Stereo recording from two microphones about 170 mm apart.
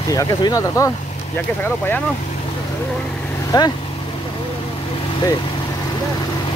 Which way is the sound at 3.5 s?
20° left (ahead or behind).